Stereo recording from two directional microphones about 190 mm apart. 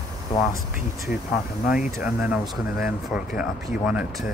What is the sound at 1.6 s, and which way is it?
Speech, 50° left (ahead or behind).